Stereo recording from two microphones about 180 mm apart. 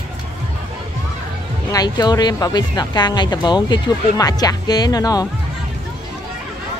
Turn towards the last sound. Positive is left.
turn(degrees=20)  # may be behind; listen again after turning